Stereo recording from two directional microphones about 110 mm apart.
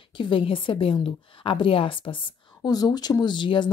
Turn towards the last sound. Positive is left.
turn(degrees=45)  # may be behind; listen again after turning